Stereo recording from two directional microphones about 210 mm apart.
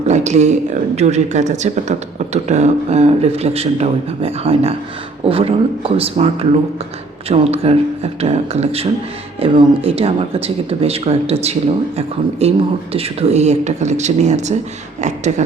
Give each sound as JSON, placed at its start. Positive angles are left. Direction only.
{"t": 0.1, "sound": "speech", "side_deg": -35}